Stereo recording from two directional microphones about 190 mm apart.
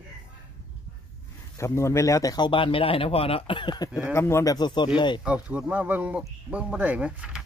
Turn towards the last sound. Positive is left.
turn(degrees=-5)  # may be behind; listen again after turning